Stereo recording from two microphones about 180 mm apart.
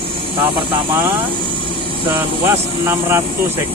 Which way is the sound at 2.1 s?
15° right (ahead or behind).